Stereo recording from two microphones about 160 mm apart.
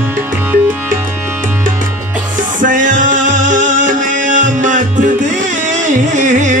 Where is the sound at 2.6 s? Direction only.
55° right (ahead or behind).